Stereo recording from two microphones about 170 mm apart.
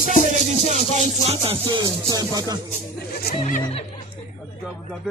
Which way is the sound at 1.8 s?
20° right (ahead or behind).